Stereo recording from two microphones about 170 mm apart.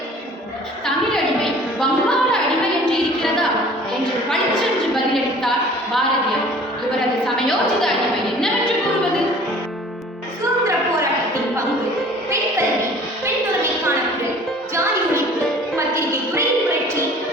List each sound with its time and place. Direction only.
1.8 s music: 5° left (ahead or behind)
5.1 s a sound: centre (ahead or behind)
7.3 s a woman's voice: centre (ahead or behind)
15.7 s music: 15° right (ahead or behind)